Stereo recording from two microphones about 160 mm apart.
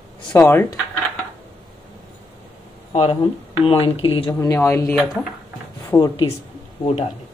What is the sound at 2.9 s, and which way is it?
Speech, 40° left (ahead or behind).